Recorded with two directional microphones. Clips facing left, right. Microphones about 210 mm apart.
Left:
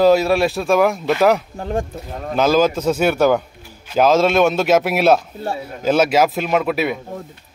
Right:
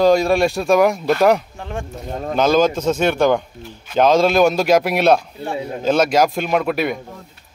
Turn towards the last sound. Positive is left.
turn(degrees=5)  # may be behind; listen again after turning